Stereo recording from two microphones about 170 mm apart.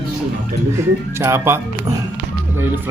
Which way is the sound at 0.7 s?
15° right (ahead or behind).